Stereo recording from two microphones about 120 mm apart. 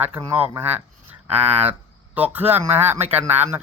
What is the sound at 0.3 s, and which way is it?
Speech, 15° right (ahead or behind).